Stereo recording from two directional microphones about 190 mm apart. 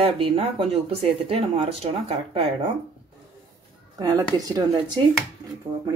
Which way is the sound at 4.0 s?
20° right (ahead or behind).